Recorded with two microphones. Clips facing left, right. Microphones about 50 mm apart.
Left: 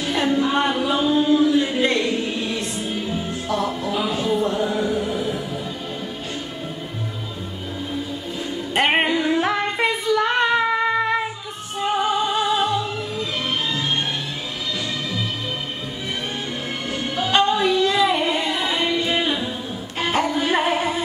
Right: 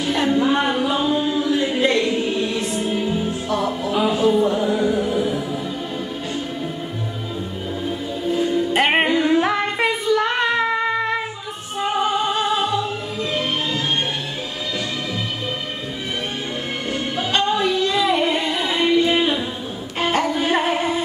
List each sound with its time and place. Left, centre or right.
0.1 s music: centre
0.5 s a sound: centre
1.1 s chant: centre
1.8 s music: centre
3.4 s music: centre
3.9 s music: centre
4.3 s music: centre
8.7 s female singing: centre
11.8 s music: centre
17.5 s a sound: centre
17.8 s singing: centre
18.9 s music: centre